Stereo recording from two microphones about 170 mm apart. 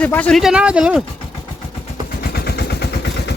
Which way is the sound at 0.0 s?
10° left (ahead or behind).